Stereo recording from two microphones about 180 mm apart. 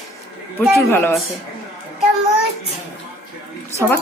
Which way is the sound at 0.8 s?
15° left (ahead or behind).